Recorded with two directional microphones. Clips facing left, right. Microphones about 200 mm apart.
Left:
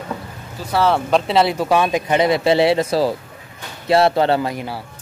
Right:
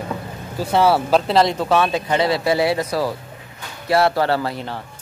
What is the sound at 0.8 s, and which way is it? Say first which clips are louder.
Speech: left 1 dB; 5° right (ahead or behind).